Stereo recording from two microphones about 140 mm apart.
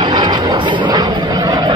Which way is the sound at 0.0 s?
30° right (ahead or behind).